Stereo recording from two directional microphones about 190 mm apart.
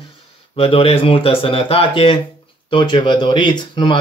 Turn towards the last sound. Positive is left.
turn(degrees=25)  # may be behind; listen again after turning